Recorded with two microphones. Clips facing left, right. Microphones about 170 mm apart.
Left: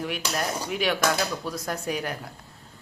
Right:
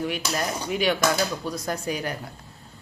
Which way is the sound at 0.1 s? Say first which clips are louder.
Right 1 dB; centre (ahead or behind).